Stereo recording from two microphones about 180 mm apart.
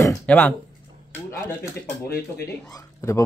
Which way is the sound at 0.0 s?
10° left (ahead or behind).